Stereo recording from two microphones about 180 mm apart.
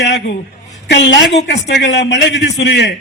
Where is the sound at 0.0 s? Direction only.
70° left (ahead or behind).